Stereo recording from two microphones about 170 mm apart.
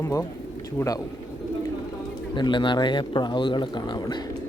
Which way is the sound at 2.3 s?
30° left (ahead or behind).